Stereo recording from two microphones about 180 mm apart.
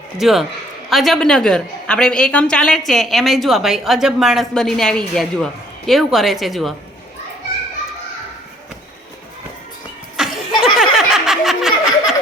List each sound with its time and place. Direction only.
0.2 s a woman's voice: centre (ahead or behind)
10.2 s chuckle: 5° right (ahead or behind)
10.6 s a sound: centre (ahead or behind)